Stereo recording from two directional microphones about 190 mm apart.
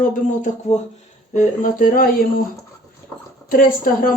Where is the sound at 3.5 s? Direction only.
45° left (ahead or behind).